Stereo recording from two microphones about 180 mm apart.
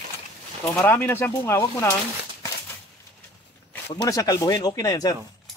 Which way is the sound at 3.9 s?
20° left (ahead or behind).